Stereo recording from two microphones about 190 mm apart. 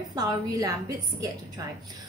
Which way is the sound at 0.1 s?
20° right (ahead or behind).